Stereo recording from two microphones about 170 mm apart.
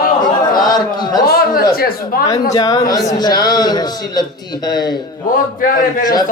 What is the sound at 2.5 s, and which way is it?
Speech, 20° left (ahead or behind).